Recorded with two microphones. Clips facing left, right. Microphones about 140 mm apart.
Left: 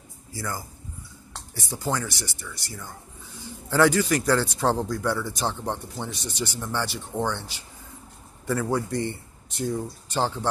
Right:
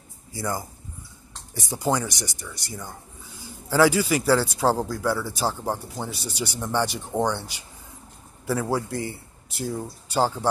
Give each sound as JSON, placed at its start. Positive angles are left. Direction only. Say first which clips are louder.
{"t": 0.3, "sound": "a man's voice", "louder": "right 4 dB", "side_deg": -20}
{"t": 3.6, "sound": "a man's voice", "louder": "right 1 dB", "side_deg": -5}